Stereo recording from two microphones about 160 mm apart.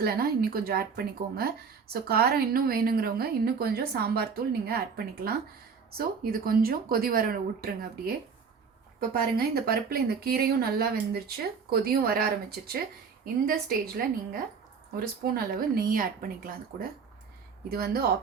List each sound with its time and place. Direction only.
0.0 s a woman's voice: 70° right (ahead or behind)
9.1 s a woman's voice: 70° right (ahead or behind)